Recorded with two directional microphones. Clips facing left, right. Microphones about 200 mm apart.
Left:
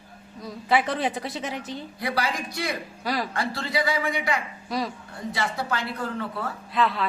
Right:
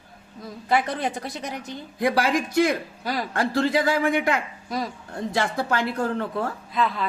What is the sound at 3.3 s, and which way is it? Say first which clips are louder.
Speech: right 6 dB; 50° right (ahead or behind).